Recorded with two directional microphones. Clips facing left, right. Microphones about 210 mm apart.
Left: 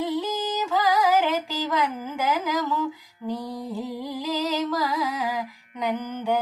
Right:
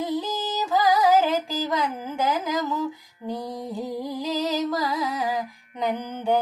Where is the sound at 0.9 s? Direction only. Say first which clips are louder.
Right 2 dB; 35° right (ahead or behind).